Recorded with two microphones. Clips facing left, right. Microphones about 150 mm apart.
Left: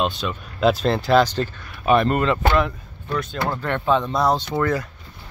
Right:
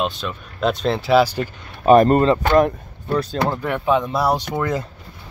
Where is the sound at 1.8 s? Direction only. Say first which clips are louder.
Right 6 dB; 40° right (ahead or behind).